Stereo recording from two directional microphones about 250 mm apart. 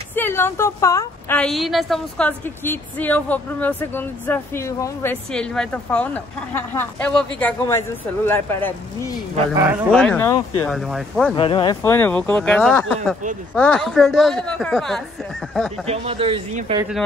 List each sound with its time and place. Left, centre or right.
0.1 s a woman's voice: centre
11.3 s a woman's voice: centre
15.9 s speech: right